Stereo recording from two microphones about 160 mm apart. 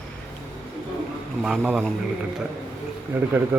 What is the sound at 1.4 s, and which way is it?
Speech, 5° right (ahead or behind).